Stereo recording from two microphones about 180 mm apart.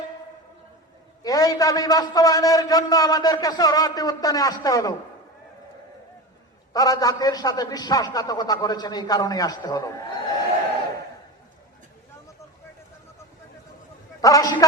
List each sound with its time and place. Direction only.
1.2 s a man's voice: 20° left (ahead or behind)
6.7 s a man's voice: 20° left (ahead or behind)
14.2 s a man's voice: 20° left (ahead or behind)